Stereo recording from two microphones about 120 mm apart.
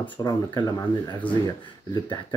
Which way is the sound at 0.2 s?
35° left (ahead or behind).